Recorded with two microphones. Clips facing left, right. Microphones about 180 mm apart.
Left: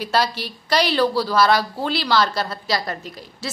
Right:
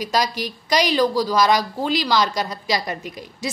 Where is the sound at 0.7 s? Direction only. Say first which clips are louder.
Even; 15° right (ahead or behind).